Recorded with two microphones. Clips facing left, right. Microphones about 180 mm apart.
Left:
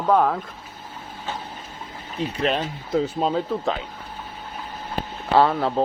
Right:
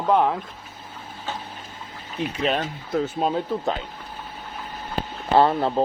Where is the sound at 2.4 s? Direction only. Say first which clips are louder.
Left 1 dB; centre (ahead or behind).